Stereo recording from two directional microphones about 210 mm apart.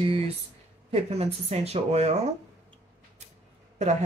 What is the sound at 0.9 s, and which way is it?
Speech, 30° right (ahead or behind).